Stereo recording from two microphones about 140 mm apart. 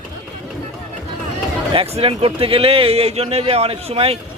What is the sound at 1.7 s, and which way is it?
A man's voice, 40° right (ahead or behind).